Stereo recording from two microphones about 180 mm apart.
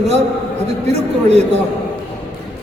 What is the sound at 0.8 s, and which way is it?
Speech, 35° right (ahead or behind).